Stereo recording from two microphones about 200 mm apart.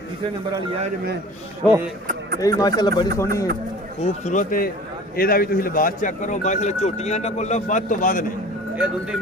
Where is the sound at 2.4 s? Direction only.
20° left (ahead or behind).